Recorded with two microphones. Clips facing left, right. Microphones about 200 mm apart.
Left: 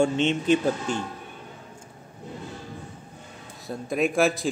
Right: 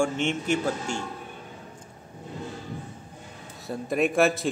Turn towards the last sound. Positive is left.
turn(degrees=0)  # may be behind; listen again after turning